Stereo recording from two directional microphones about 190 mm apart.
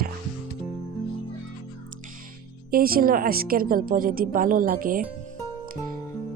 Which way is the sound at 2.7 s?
50° right (ahead or behind).